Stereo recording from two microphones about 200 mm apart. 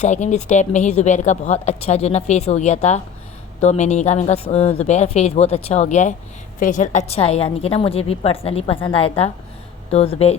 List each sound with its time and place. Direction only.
0.0 s a woman's voice: 35° left (ahead or behind)